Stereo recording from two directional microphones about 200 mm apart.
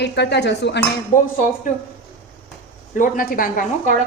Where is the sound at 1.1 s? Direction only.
40° left (ahead or behind).